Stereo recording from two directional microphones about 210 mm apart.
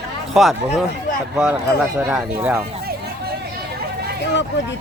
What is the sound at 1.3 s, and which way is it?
Speech, 10° right (ahead or behind).